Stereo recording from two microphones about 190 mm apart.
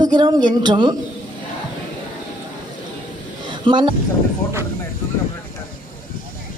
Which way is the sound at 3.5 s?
25° right (ahead or behind).